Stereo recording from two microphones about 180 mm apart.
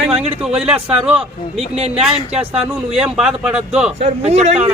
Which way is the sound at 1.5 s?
35° right (ahead or behind).